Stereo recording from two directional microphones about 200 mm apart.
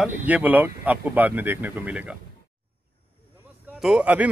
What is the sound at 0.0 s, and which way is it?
Speech, 10° right (ahead or behind).